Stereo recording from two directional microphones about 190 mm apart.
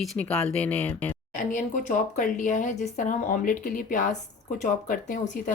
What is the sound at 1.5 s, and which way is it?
Speech, 40° left (ahead or behind).